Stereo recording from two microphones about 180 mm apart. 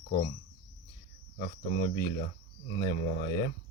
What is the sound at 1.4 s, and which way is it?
Speech, 40° left (ahead or behind).